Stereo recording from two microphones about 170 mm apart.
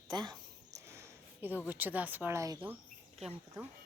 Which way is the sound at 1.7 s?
10° right (ahead or behind).